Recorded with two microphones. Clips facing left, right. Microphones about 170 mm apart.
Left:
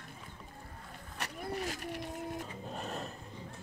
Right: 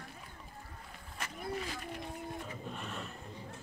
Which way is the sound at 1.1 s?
70° left (ahead or behind).